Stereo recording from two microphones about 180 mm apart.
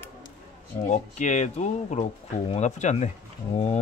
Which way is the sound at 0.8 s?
40° left (ahead or behind).